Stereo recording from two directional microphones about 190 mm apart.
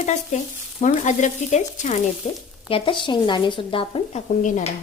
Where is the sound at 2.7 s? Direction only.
25° left (ahead or behind).